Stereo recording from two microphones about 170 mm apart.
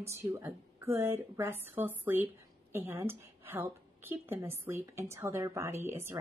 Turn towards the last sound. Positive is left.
turn(degrees=-15)  # may be behind; listen again after turning